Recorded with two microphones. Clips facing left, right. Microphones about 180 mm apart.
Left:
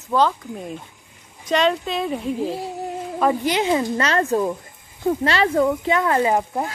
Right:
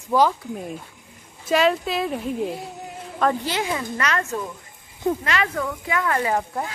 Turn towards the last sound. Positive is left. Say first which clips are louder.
# left 4 dB
turn(degrees=20)  # may be behind; listen again after turning